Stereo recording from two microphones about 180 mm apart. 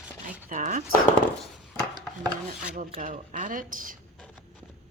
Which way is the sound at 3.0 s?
45° right (ahead or behind).